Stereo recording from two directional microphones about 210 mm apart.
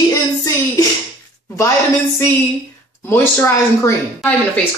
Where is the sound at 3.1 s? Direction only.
10° left (ahead or behind).